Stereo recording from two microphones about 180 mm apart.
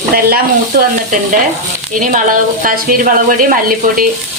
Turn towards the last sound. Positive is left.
turn(degrees=-50)  # may be behind; listen again after turning